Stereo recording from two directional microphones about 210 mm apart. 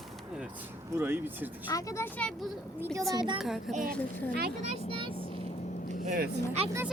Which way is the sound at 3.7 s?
40° right (ahead or behind).